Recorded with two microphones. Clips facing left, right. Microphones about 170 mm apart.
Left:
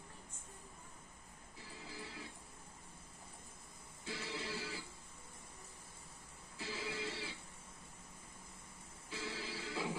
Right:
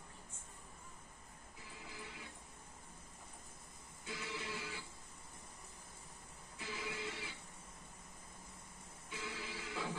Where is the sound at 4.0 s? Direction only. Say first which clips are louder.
Left 1 dB; 30° left (ahead or behind).